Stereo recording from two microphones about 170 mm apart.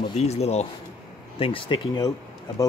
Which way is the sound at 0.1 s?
40° left (ahead or behind).